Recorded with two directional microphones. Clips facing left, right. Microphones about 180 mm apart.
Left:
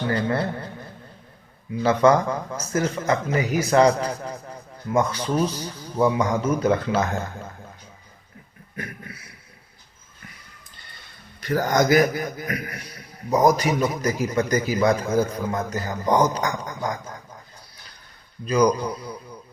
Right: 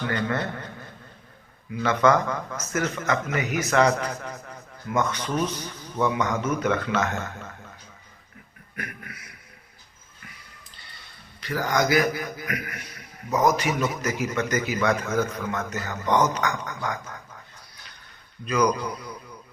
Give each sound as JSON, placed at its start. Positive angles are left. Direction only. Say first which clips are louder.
{"t": 0.0, "sound": "a man's voice", "louder": "left 3 dB", "side_deg": 30}
{"t": 1.7, "sound": "a man's voice", "louder": "left 3 dB", "side_deg": 30}
{"t": 8.7, "sound": "a sound", "louder": "left 3 dB", "side_deg": 30}
{"t": 11.3, "sound": "a man's voice", "louder": "left 4 dB", "side_deg": 45}
{"t": 18.4, "sound": "a man's voice", "louder": "left 4 dB", "side_deg": 30}